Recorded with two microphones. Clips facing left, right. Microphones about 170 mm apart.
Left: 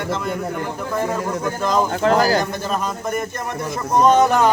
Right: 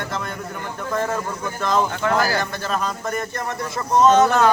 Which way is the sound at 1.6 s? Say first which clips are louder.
Left 1 dB; 15° left (ahead or behind).